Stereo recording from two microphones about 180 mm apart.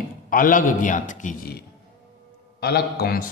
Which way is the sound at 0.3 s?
50° left (ahead or behind).